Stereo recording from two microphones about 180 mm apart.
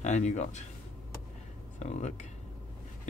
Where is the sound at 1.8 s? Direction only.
40° left (ahead or behind).